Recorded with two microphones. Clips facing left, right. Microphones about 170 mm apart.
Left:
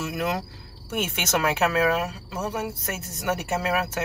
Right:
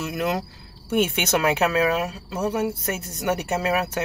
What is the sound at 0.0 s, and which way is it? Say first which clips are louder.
Speech: right 2 dB; centre (ahead or behind).